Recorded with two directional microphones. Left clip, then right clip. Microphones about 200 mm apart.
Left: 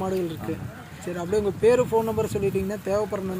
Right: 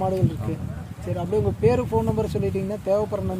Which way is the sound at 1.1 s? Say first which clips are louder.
Right 1 dB; 55° right (ahead or behind).